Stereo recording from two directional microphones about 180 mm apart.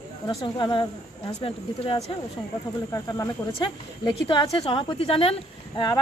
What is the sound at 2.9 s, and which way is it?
Speech, 20° left (ahead or behind).